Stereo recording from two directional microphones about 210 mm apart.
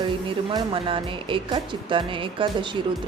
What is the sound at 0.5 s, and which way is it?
Speech, 25° right (ahead or behind).